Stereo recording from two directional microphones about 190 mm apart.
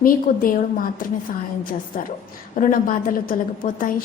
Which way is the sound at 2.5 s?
45° left (ahead or behind).